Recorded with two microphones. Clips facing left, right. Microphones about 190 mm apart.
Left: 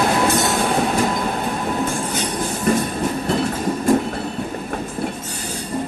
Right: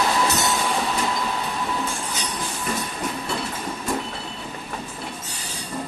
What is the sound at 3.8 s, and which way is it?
Train, 45° left (ahead or behind).